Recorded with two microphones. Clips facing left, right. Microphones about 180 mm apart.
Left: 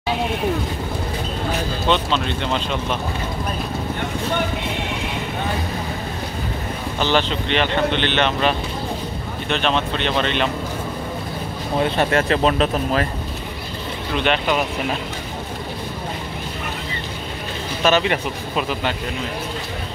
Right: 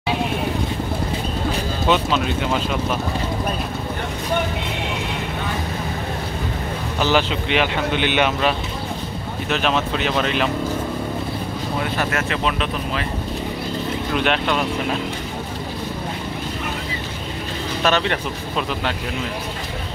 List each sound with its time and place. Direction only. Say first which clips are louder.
1.9 s speech: right 1 dB; 5° right (ahead or behind)
7.0 s speech: right 1 dB; 5° right (ahead or behind)
11.8 s speech: left 6 dB; 30° left (ahead or behind)
14.1 s speech: left 1 dB; centre (ahead or behind)
17.8 s speech: left 2 dB; 5° left (ahead or behind)